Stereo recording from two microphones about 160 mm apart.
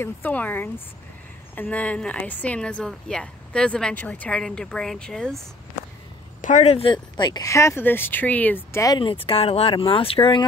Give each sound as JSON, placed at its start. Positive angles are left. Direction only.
{"t": 0.0, "sound": "a woman's voice", "side_deg": 10}
{"t": 6.4, "sound": "speech", "side_deg": 50}